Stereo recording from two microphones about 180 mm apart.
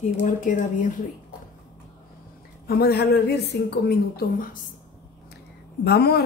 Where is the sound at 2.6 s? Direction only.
60° left (ahead or behind).